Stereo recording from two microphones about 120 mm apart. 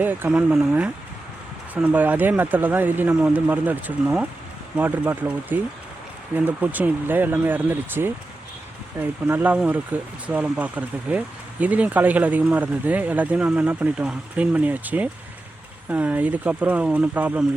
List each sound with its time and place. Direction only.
0.0 s speech: 15° right (ahead or behind)